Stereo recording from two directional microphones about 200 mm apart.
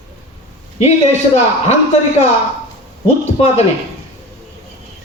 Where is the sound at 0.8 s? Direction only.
35° left (ahead or behind).